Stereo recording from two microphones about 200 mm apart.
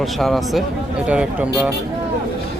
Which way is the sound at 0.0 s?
Centre (ahead or behind).